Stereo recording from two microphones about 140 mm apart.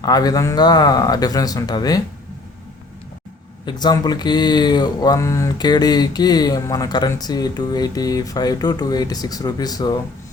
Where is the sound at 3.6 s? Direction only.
30° left (ahead or behind).